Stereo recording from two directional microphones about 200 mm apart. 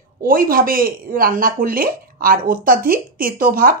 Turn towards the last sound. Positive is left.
turn(degrees=-45)  # may be behind; listen again after turning